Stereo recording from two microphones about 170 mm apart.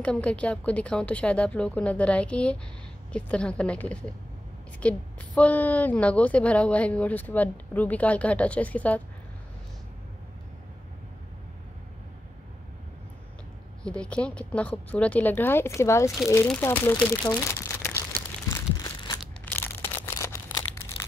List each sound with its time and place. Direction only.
0.0 s a woman's voice: 5° left (ahead or behind)
13.8 s a woman's voice: 5° left (ahead or behind)
16.9 s speech: 25° left (ahead or behind)
17.6 s crumpling: 10° left (ahead or behind)
20.2 s a sound: 15° left (ahead or behind)